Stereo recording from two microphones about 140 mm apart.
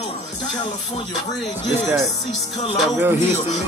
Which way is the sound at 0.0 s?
55° left (ahead or behind).